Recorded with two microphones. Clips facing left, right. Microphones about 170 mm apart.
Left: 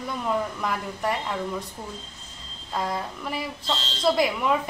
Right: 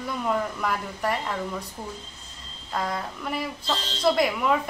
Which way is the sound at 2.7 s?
Centre (ahead or behind).